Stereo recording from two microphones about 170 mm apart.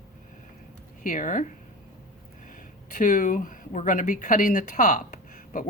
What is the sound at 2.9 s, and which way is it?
Speech, 50° left (ahead or behind).